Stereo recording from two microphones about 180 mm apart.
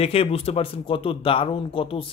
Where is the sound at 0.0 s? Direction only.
35° left (ahead or behind).